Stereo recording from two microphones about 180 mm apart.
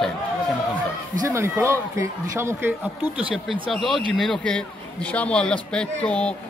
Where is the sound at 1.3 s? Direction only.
15° right (ahead or behind).